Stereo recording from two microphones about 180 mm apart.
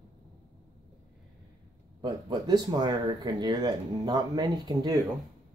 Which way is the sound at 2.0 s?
25° right (ahead or behind).